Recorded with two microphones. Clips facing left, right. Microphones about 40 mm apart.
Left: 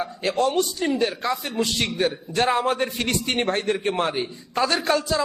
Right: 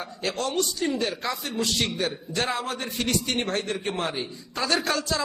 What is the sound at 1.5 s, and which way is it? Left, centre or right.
A man's voice, left.